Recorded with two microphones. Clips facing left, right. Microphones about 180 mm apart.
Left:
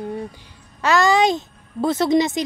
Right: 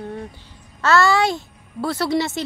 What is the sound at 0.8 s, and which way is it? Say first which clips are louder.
A woman's voice: left 1 dB; 15° left (ahead or behind).